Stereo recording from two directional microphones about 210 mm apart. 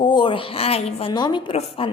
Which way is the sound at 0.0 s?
20° left (ahead or behind).